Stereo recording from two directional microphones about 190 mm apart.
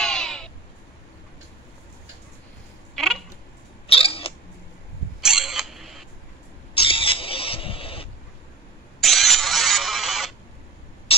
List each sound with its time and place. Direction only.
0.0 s crow: 5° left (ahead or behind)
3.8 s cat: 30° left (ahead or behind)
5.2 s creak: 5° right (ahead or behind)
6.7 s a sound: 30° left (ahead or behind)
9.0 s a sound: centre (ahead or behind)
11.1 s rodents: 30° left (ahead or behind)